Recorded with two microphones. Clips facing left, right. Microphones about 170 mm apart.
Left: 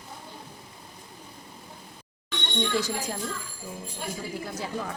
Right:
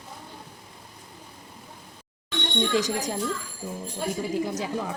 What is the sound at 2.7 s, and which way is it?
Speech, 20° right (ahead or behind).